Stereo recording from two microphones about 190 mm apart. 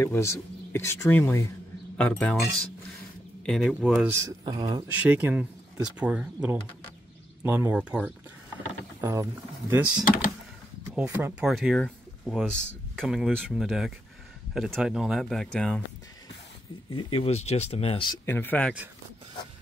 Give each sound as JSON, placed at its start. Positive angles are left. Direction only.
{"t": 0.0, "sound": "speech", "side_deg": 15}
{"t": 3.4, "sound": "speech", "side_deg": 0}
{"t": 5.0, "sound": "speech", "side_deg": -5}
{"t": 9.0, "sound": "speech", "side_deg": -15}
{"t": 16.9, "sound": "speech", "side_deg": 30}
{"t": 18.2, "sound": "speech", "side_deg": 10}